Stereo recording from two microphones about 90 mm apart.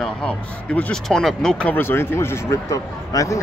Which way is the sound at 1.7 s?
25° left (ahead or behind).